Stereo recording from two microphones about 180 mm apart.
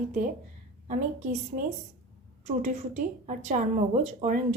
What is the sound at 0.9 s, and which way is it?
Speech, 45° right (ahead or behind).